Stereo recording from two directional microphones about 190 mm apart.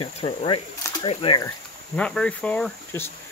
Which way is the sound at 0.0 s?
30° left (ahead or behind).